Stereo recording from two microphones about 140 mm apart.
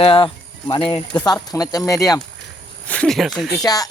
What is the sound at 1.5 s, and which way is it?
Speech, 25° left (ahead or behind).